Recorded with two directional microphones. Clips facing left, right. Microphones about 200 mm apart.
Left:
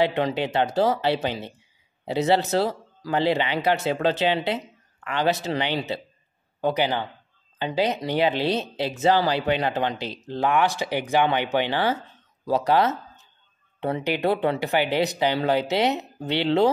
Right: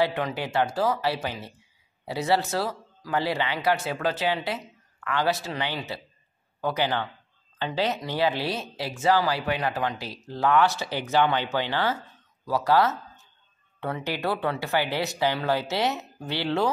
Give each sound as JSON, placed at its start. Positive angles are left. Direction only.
{"t": 0.0, "sound": "speech", "side_deg": 20}